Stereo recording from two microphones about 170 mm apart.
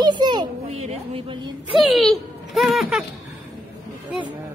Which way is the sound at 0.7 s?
40° right (ahead or behind).